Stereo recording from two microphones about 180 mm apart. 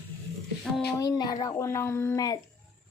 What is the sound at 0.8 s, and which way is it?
Speech, 20° left (ahead or behind).